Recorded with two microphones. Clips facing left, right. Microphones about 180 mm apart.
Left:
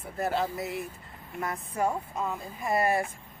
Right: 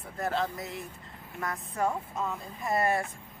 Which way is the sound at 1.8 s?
15° left (ahead or behind).